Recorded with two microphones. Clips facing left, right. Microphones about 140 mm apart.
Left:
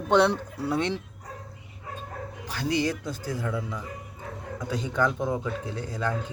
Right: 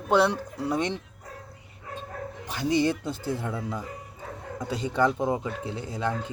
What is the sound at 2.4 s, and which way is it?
Speech, 20° right (ahead or behind).